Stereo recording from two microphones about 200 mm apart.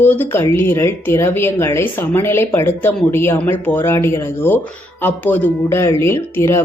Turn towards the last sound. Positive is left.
turn(degrees=10)  # may be behind; listen again after turning